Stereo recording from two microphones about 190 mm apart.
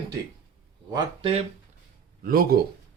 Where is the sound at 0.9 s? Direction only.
30° right (ahead or behind).